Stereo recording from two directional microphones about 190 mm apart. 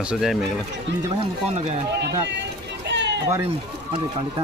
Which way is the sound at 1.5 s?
35° right (ahead or behind).